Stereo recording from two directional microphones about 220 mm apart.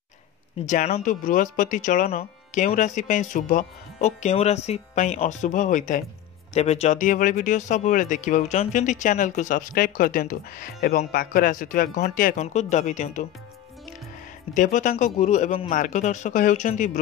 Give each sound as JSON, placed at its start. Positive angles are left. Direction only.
{"t": 0.6, "sound": "speech", "side_deg": 30}
{"t": 14.5, "sound": "speech", "side_deg": 35}